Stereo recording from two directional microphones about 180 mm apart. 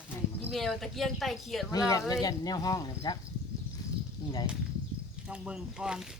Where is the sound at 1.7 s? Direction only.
20° left (ahead or behind).